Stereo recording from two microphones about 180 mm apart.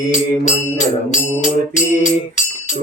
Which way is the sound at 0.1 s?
40° left (ahead or behind).